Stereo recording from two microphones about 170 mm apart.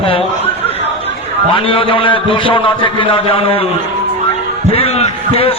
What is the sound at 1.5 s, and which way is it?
A man's voice, 30° left (ahead or behind).